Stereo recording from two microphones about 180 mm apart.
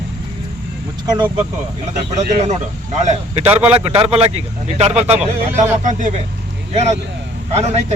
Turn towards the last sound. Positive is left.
turn(degrees=-35)  # may be behind; listen again after turning